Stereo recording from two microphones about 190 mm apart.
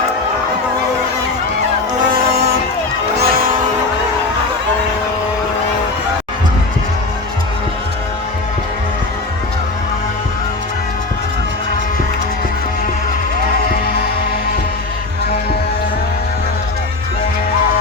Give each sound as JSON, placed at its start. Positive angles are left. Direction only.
{"t": 3.2, "sound": "vehicle", "side_deg": -50}